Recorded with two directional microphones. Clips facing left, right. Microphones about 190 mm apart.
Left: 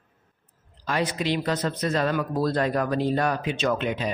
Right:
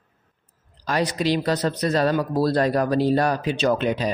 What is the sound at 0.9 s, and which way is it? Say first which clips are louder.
Speech: right 3 dB; 40° right (ahead or behind).